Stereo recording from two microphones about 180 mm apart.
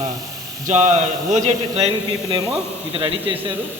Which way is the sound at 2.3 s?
20° right (ahead or behind).